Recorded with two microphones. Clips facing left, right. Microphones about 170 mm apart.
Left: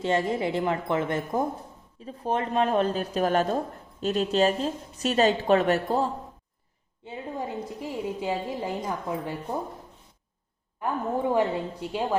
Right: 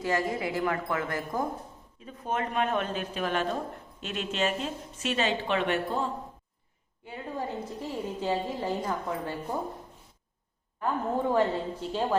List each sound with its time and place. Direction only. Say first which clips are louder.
0.0 s a woman's voice: left 4 dB; 25° left (ahead or behind)
7.0 s speech: left 2 dB; 25° left (ahead or behind)
7.8 s a woman's voice: left 3 dB; 10° left (ahead or behind)
10.8 s a woman's voice: left 1 dB; 15° left (ahead or behind)